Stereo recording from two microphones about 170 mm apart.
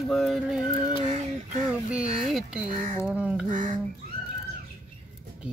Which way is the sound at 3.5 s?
50° right (ahead or behind).